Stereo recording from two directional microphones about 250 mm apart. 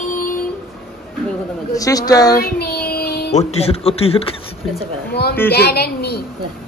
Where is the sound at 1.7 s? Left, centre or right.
Centre.